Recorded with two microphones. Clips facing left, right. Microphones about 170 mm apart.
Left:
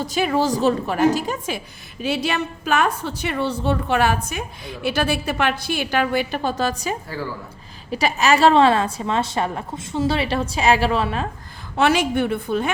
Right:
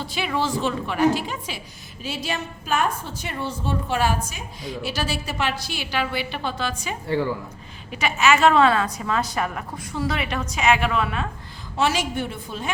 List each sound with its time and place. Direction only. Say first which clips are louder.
0.0 s a woman's voice: left 5 dB; 45° left (ahead or behind)
11.8 s a woman's voice: left 5 dB; 60° left (ahead or behind)